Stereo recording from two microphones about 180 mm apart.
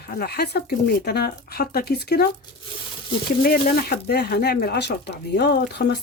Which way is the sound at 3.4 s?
60° left (ahead or behind).